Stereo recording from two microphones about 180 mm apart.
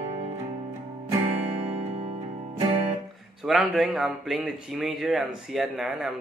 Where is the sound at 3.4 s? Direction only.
5° right (ahead or behind).